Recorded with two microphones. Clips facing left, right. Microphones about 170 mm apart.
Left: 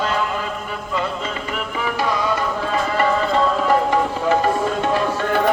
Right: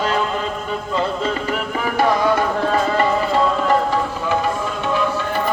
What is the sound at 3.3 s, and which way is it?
Music, centre (ahead or behind).